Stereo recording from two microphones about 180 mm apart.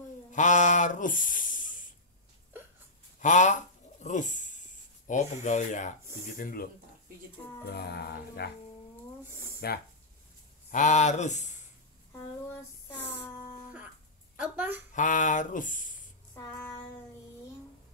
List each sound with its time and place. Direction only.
0.3 s speech: 45° left (ahead or behind)
3.2 s a sound: 45° left (ahead or behind)
5.0 s speech: 40° left (ahead or behind)
7.7 s music: 65° left (ahead or behind)
9.6 s music: 65° left (ahead or behind)
10.7 s speech: 40° left (ahead or behind)
12.9 s a sound: 10° left (ahead or behind)
14.3 s a woman's voice: 10° right (ahead or behind)
15.0 s speech: 45° left (ahead or behind)
16.3 s child singing: 15° left (ahead or behind)